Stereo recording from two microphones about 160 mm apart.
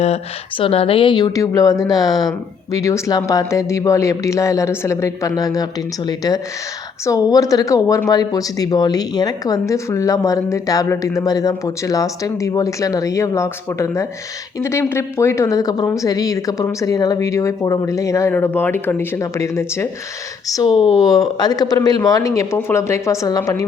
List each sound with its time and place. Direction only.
0.0 s speech: 40° left (ahead or behind); by 23.6 s 20° left (ahead or behind)